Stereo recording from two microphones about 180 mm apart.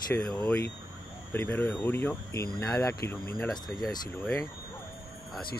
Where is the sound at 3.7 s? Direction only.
Centre (ahead or behind).